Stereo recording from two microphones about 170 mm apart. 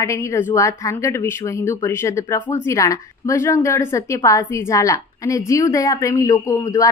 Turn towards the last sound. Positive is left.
turn(degrees=20)  # may be behind; listen again after turning